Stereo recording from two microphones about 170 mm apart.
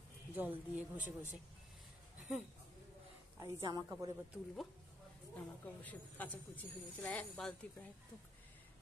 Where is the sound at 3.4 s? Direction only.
20° right (ahead or behind).